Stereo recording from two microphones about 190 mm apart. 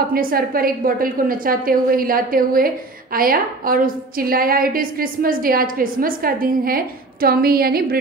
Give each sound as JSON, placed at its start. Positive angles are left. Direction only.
{"t": 0.1, "sound": "a woman's voice", "side_deg": -50}